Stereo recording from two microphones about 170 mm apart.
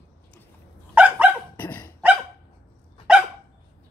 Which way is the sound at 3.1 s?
5° right (ahead or behind).